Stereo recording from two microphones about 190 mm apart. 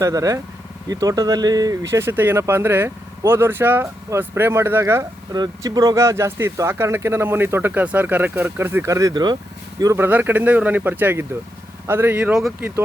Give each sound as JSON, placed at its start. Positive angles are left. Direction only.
{"t": 0.0, "sound": "speech", "side_deg": -15}